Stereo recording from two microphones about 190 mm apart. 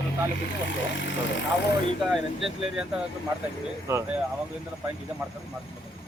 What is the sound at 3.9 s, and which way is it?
Speech, 10° right (ahead or behind).